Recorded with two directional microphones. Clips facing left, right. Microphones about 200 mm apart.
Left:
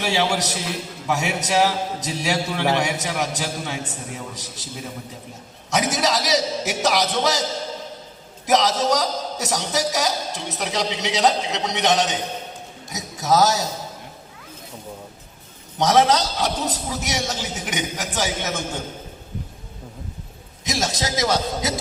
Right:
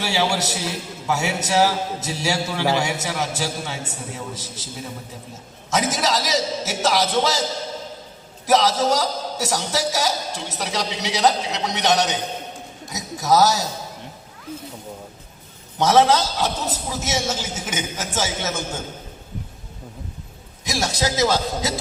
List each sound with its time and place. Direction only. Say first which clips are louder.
0.0 s a man's voice: even; 20° left (ahead or behind)
5.7 s a man's voice: even; 20° left (ahead or behind)
8.4 s a man's voice: right 1 dB; 20° left (ahead or behind)
15.8 s a man's voice: right 1 dB; 15° left (ahead or behind)
20.7 s a man's voice: right 1 dB; 20° left (ahead or behind)